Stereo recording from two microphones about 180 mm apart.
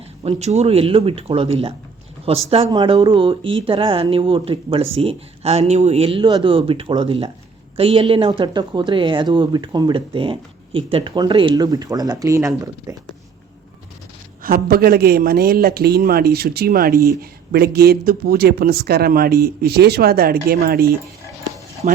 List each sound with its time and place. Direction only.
0.2 s speech: 35° right (ahead or behind); by 13.0 s 20° right (ahead or behind)
14.4 s a man's voice: 55° right (ahead or behind)
21.8 s speech: 35° right (ahead or behind)